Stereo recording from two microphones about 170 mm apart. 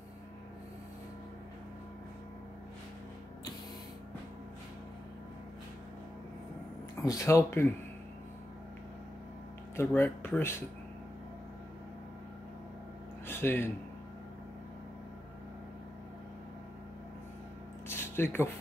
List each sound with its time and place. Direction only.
7.0 s speech: 15° left (ahead or behind)
9.8 s speech: 15° left (ahead or behind)
13.3 s a man's voice: 15° left (ahead or behind)
17.8 s a sound: 15° left (ahead or behind)